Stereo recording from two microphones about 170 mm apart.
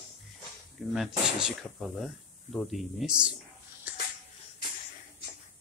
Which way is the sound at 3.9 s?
10° right (ahead or behind).